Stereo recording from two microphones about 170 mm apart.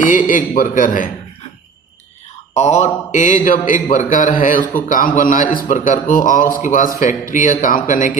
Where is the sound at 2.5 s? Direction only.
40° left (ahead or behind).